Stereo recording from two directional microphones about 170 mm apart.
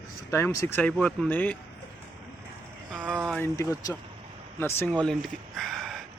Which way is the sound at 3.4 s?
15° left (ahead or behind).